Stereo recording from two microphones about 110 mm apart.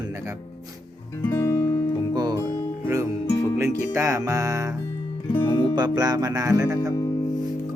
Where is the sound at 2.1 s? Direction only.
40° right (ahead or behind).